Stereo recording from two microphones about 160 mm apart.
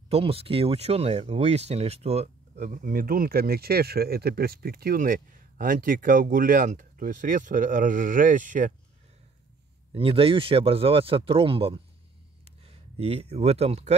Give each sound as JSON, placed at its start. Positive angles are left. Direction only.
{"t": 0.1, "sound": "speech", "side_deg": -35}
{"t": 9.9, "sound": "speech", "side_deg": -35}